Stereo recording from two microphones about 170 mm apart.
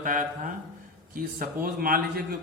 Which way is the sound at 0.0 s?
50° right (ahead or behind).